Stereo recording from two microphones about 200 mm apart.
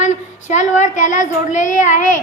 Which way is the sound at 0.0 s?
35° left (ahead or behind).